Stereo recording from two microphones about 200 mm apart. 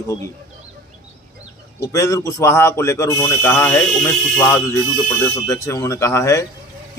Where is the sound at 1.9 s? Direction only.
15° left (ahead or behind).